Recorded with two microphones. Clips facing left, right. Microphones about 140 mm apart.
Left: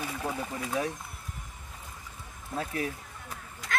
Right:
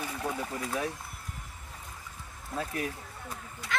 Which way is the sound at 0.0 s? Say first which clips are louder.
Even; 10° left (ahead or behind).